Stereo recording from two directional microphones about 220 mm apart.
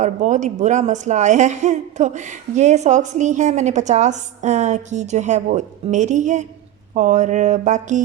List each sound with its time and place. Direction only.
0.0 s a woman's voice: 35° right (ahead or behind)